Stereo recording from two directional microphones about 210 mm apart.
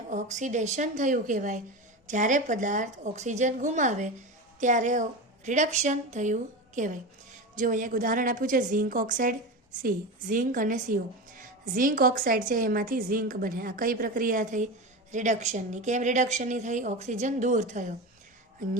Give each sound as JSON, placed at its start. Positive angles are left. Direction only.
{"t": 0.1, "sound": "a woman's voice", "side_deg": -35}